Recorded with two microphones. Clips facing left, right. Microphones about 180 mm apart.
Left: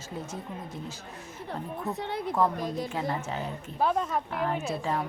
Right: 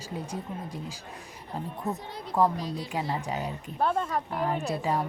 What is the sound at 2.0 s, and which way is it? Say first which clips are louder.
Speech: left 8 dB; 65° left (ahead or behind).